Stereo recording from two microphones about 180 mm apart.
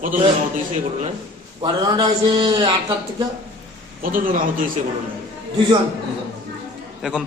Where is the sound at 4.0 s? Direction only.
50° right (ahead or behind).